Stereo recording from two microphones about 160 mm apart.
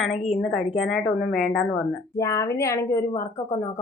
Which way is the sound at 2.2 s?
20° left (ahead or behind).